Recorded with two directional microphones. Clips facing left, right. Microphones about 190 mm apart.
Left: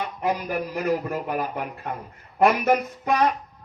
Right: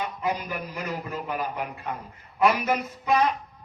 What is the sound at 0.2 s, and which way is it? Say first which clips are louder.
A man's voice: left 8 dB; 50° left (ahead or behind).